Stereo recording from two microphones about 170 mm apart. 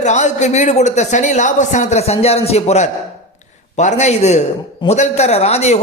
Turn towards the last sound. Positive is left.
turn(degrees=40)  # may be behind; listen again after turning